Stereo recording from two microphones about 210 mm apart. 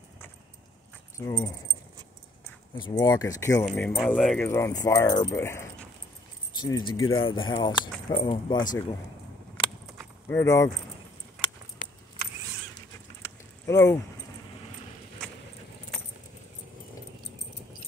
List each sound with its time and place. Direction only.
1.1 s speech: 15° left (ahead or behind)
2.8 s speech: 20° left (ahead or behind)
3.6 s speech: centre (ahead or behind); by 6.9 s 20° left (ahead or behind)
6.9 s speech: 75° left (ahead or behind)
7.2 s speech: 25° left (ahead or behind)
10.2 s speech: 15° left (ahead or behind)
12.7 s bird: 15° left (ahead or behind)
15.2 s keys jangling: 5° left (ahead or behind)